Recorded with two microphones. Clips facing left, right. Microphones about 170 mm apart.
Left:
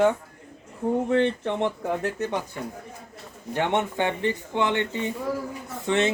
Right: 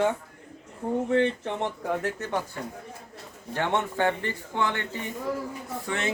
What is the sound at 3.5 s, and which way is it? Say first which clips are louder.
Speech: left 3 dB; 20° left (ahead or behind).